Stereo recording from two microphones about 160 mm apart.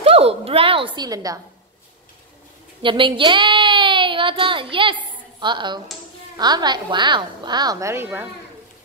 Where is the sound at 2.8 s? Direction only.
30° right (ahead or behind).